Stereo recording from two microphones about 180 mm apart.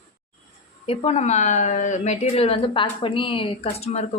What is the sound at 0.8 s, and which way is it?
A woman's voice, 35° left (ahead or behind).